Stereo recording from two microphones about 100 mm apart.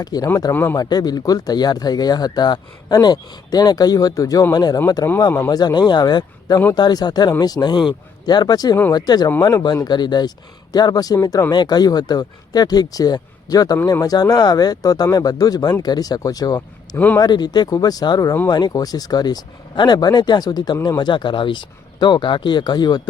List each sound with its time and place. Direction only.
0.0 s speech: 40° left (ahead or behind)
0.5 s speech: 20° left (ahead or behind)
0.8 s speech: 40° left (ahead or behind)
21.0 s speech: 50° left (ahead or behind)